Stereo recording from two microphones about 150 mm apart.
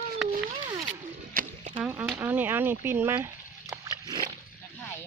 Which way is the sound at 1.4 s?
70° right (ahead or behind).